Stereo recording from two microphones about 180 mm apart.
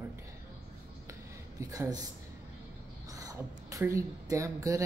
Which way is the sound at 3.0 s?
20° right (ahead or behind).